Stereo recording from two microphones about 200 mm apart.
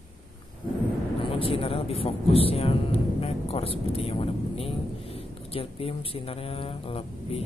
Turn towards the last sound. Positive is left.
turn(degrees=30)  # may be behind; listen again after turning